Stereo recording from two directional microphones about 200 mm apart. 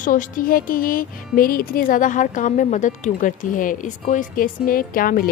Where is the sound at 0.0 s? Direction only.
40° left (ahead or behind).